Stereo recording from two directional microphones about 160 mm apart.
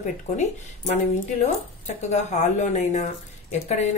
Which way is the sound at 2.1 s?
45° left (ahead or behind).